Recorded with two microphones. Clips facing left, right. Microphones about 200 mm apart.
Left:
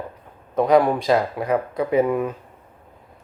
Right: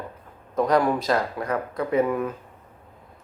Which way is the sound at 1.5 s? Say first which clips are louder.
Left 5 dB; 20° left (ahead or behind).